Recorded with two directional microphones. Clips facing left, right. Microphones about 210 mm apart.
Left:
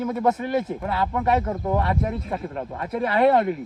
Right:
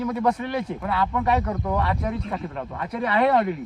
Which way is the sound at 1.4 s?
25° left (ahead or behind).